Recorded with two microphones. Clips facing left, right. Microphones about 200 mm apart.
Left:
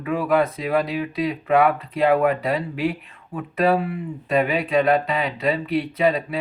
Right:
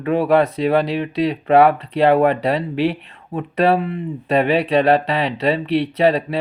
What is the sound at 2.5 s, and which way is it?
Speech, 30° right (ahead or behind).